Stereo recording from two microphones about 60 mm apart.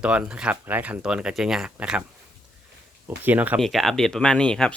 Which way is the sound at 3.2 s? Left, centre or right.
Right.